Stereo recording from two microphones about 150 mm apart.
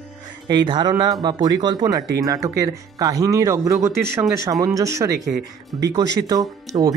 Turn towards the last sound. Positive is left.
turn(degrees=-25)  # may be behind; listen again after turning